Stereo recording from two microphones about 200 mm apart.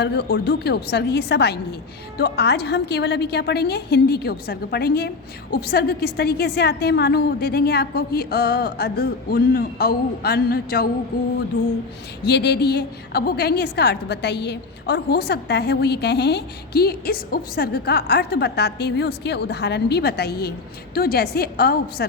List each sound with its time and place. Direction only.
0.0 s a woman's voice: 55° left (ahead or behind)
12.2 s a woman's voice: 55° left (ahead or behind)